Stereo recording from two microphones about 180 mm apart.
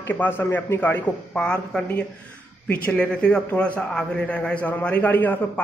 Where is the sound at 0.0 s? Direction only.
10° left (ahead or behind).